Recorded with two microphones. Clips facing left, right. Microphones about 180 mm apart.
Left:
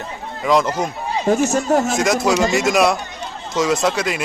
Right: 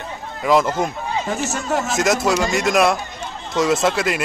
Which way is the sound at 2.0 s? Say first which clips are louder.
Left 1 dB; centre (ahead or behind).